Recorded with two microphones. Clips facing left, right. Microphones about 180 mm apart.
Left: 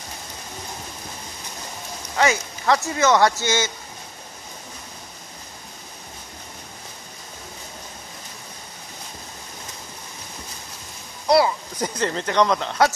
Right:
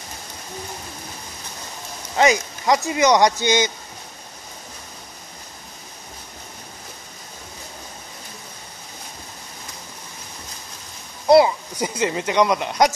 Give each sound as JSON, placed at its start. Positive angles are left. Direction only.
{"t": 2.1, "sound": "speech", "side_deg": -15}
{"t": 11.2, "sound": "speech", "side_deg": -20}